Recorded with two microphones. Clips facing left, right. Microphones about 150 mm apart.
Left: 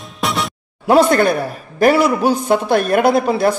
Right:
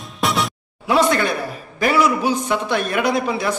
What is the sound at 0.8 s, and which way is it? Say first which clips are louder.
A man's voice: left 5 dB; 50° left (ahead or behind).